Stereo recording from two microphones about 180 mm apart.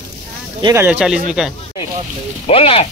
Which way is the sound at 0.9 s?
5° right (ahead or behind).